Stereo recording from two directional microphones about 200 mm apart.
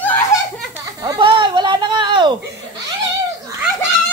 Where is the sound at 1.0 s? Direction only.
25° right (ahead or behind).